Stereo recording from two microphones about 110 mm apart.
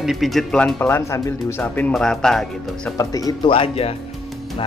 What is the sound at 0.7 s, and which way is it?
Speech, 20° left (ahead or behind).